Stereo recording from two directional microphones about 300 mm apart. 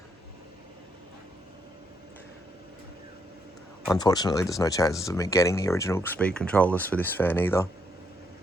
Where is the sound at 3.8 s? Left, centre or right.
Centre.